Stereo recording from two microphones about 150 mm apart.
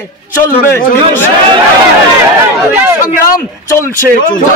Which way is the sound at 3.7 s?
15° left (ahead or behind).